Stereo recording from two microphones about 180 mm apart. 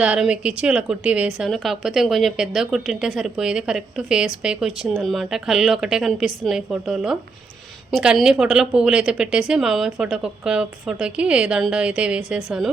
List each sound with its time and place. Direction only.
0.0 s a woman's voice: 5° right (ahead or behind)